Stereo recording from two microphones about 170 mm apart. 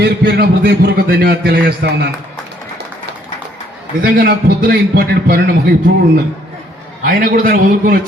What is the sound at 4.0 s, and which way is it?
A man's voice, 60° right (ahead or behind).